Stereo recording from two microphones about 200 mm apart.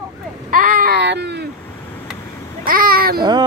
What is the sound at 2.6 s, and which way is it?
Speech, 45° right (ahead or behind).